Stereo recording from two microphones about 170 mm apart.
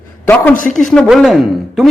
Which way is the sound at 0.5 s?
50° left (ahead or behind).